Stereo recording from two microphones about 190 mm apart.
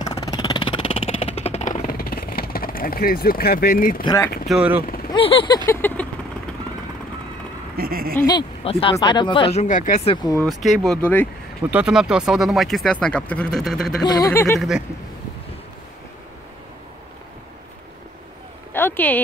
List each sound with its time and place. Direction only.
0.1 s a sound: 20° left (ahead or behind); by 4.0 s 50° left (ahead or behind)
4.0 s speech: 20° left (ahead or behind)
4.5 s speech: 5° right (ahead or behind)
4.8 s vehicle: 50° left (ahead or behind)
5.1 s speech: 25° left (ahead or behind)
5.7 s speech: 10° left (ahead or behind)
7.7 s speech: 55° right (ahead or behind)
8.2 s speech: 20° left (ahead or behind); by 10.0 s 40° left (ahead or behind)
10.2 s speech: 20° left (ahead or behind)
10.6 s speech: centre (ahead or behind)
11.7 s speech: 5° right (ahead or behind)
14.0 s speech: 20° left (ahead or behind)
18.7 s a sound: 10° left (ahead or behind)